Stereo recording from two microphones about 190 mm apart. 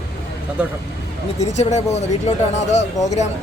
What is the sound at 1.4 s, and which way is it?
Speech, 35° left (ahead or behind).